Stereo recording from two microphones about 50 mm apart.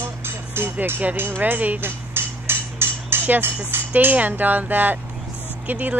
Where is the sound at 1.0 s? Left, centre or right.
Right.